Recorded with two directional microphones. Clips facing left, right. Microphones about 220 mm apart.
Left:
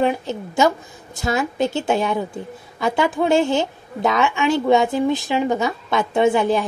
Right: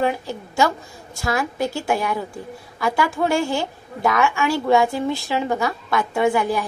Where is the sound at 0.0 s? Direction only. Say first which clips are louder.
Left 2 dB; 20° left (ahead or behind).